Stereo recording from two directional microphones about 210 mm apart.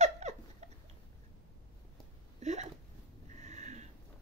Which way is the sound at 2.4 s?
35° right (ahead or behind).